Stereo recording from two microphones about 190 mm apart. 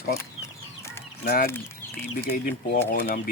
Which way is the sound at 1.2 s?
50° left (ahead or behind).